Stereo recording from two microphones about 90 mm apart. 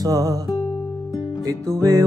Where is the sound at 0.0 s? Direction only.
45° right (ahead or behind).